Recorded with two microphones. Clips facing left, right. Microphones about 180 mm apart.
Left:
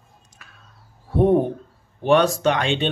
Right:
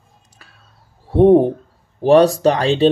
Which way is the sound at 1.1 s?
30° right (ahead or behind).